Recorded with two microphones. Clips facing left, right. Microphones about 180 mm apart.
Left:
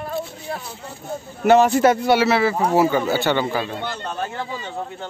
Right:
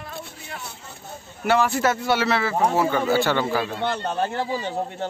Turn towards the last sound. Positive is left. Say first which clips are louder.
# right 3 dB
turn(degrees=-35)  # may be behind; listen again after turning